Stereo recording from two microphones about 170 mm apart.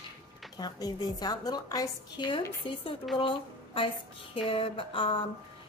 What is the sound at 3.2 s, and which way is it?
Speech, 30° left (ahead or behind).